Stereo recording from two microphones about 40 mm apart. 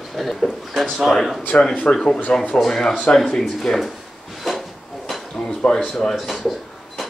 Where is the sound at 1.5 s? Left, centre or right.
Left.